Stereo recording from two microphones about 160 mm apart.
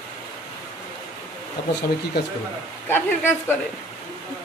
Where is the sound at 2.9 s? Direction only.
15° left (ahead or behind).